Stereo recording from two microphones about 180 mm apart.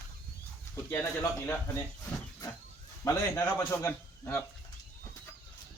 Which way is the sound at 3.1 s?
15° left (ahead or behind).